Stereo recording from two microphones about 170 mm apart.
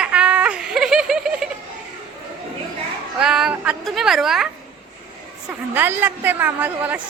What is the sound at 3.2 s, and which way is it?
A woman's voice, 5° right (ahead or behind).